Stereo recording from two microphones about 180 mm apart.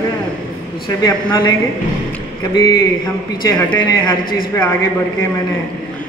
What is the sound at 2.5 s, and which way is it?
A man's voice, 20° left (ahead or behind).